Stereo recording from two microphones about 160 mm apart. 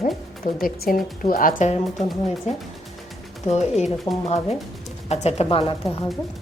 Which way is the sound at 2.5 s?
45° left (ahead or behind).